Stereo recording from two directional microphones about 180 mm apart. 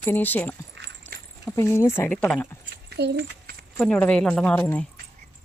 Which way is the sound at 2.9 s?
65° right (ahead or behind).